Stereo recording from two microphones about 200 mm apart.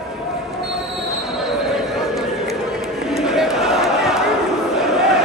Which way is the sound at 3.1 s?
Centre (ahead or behind).